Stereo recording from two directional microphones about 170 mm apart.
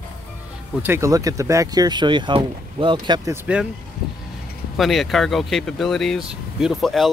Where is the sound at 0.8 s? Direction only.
15° right (ahead or behind).